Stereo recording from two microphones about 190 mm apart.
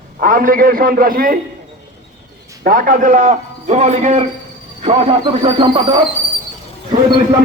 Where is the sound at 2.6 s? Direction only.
45° right (ahead or behind); by 5.8 s 25° right (ahead or behind).